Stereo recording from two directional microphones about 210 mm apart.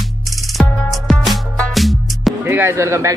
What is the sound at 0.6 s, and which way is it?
Music, centre (ahead or behind).